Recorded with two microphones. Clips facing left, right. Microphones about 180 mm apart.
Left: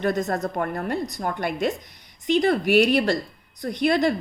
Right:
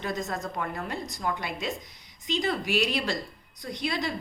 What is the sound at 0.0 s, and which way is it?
A woman's voice, 65° left (ahead or behind).